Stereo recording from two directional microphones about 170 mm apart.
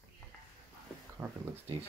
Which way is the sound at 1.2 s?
15° right (ahead or behind).